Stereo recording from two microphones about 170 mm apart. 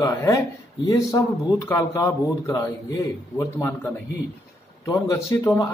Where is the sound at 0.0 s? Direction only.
15° left (ahead or behind).